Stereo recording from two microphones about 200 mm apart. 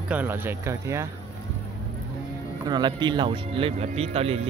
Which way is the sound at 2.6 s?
20° right (ahead or behind).